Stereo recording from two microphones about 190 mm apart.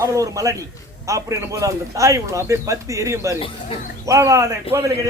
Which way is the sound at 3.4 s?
30° left (ahead or behind).